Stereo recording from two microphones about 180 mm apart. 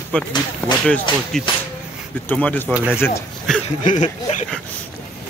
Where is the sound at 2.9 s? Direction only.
15° left (ahead or behind).